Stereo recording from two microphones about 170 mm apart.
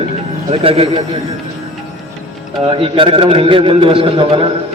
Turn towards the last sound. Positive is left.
turn(degrees=-30)  # may be behind; listen again after turning